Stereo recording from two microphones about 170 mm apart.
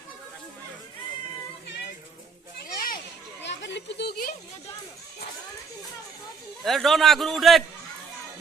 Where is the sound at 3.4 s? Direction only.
90° left; by 4.3 s 70° left (ahead or behind).